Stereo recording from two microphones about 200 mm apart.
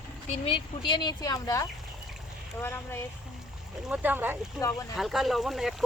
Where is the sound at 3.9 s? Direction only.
10° right (ahead or behind).